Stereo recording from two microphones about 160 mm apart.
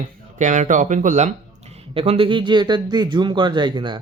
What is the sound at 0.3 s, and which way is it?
Speech, 50° right (ahead or behind).